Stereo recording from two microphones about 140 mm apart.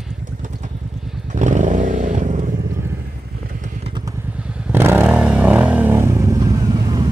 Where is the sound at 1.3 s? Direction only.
60° right (ahead or behind).